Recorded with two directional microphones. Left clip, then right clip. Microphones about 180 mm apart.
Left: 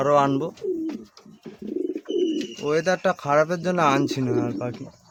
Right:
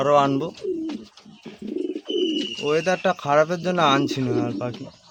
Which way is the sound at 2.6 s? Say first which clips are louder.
Even; 5° left (ahead or behind).